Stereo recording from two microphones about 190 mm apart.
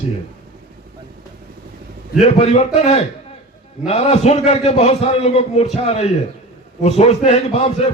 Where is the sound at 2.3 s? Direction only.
35° left (ahead or behind).